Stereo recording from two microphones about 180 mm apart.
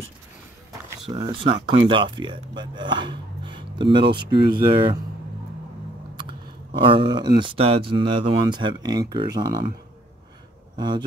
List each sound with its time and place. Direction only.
1.0 s speech: 30° right (ahead or behind)
6.1 s speech: 25° right (ahead or behind)
10.8 s speech: 25° right (ahead or behind)